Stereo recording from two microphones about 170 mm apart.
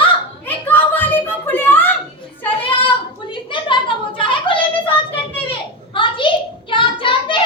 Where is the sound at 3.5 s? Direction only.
30° left (ahead or behind).